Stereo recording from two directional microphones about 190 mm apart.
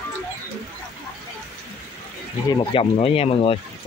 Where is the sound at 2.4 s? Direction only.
30° left (ahead or behind).